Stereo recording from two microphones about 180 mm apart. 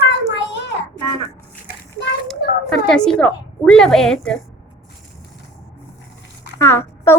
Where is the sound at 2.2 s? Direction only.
5° left (ahead or behind).